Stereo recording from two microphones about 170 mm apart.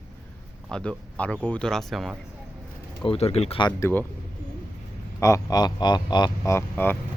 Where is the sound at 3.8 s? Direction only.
15° left (ahead or behind).